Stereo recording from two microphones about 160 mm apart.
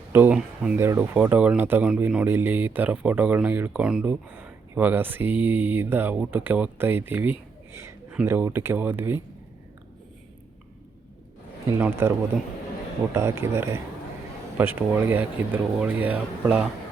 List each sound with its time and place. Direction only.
0.1 s speech: 10° right (ahead or behind)
11.8 s speech: 15° right (ahead or behind)
13.1 s speech: 15° right (ahead or behind)